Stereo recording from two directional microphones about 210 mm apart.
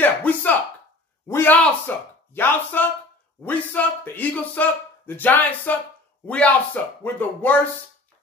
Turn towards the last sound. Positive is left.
turn(degrees=10)  # may be behind; listen again after turning